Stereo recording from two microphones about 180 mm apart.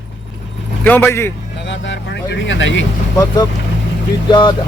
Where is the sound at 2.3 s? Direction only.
90° left.